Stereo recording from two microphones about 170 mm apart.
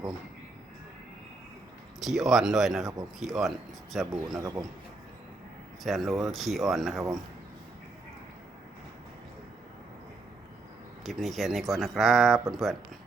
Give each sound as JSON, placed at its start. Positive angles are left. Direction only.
{"t": 2.0, "sound": "speech", "side_deg": 0}
{"t": 4.4, "sound": "speech", "side_deg": -20}
{"t": 5.8, "sound": "speech", "side_deg": 0}
{"t": 11.0, "sound": "speech", "side_deg": 0}